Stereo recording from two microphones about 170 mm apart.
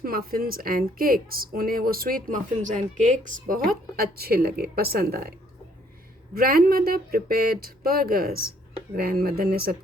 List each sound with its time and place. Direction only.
0.0 s a woman's voice: 60° right (ahead or behind)
6.3 s a woman's voice: 60° right (ahead or behind)